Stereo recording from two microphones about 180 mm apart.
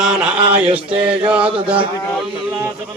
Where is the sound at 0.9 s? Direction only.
30° right (ahead or behind).